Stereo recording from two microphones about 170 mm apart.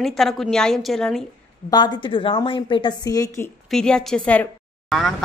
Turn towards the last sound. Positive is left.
turn(degrees=0)  # may be behind; listen again after turning